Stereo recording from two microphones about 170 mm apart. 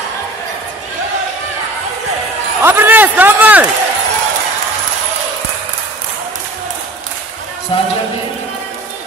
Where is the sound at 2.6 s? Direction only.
10° right (ahead or behind).